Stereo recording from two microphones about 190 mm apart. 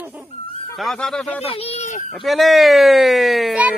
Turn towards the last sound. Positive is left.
turn(degrees=-5)  # may be behind; listen again after turning